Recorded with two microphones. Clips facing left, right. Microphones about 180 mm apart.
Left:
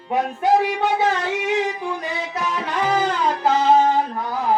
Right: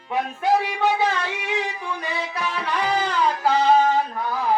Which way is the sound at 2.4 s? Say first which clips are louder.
Left 3 dB; 45° left (ahead or behind).